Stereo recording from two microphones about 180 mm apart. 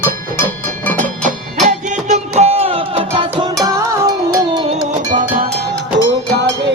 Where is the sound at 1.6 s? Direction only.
40° right (ahead or behind); by 4.6 s 20° right (ahead or behind).